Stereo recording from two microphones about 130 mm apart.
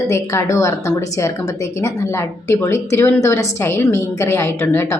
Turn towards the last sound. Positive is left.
turn(degrees=15)  # may be behind; listen again after turning